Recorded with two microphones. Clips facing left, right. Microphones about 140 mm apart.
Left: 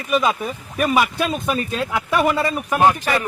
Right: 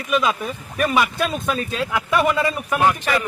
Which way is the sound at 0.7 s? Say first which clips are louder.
Left 1 dB; 5° left (ahead or behind).